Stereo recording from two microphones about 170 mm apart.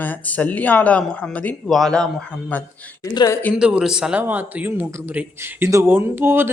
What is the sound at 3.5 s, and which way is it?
Speech, 5° right (ahead or behind).